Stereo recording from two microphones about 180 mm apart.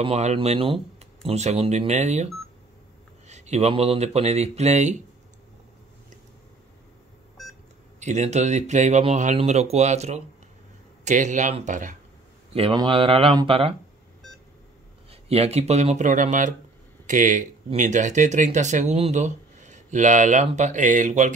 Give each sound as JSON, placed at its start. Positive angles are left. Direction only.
{"t": 0.0, "sound": "speech", "side_deg": -35}
{"t": 8.0, "sound": "speech", "side_deg": -40}
{"t": 12.5, "sound": "speech", "side_deg": -30}
{"t": 15.0, "sound": "speech", "side_deg": -35}